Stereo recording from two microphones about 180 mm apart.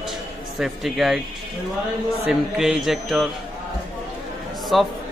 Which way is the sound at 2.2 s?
Centre (ahead or behind).